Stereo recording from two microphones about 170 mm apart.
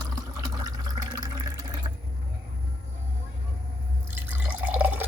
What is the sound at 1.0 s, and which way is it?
Water, 25° right (ahead or behind).